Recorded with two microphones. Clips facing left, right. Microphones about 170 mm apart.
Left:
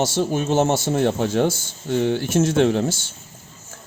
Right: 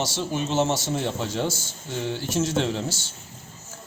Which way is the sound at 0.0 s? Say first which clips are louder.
Left 6 dB; 50° left (ahead or behind).